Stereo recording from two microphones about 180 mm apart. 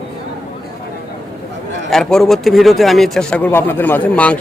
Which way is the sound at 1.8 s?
Centre (ahead or behind).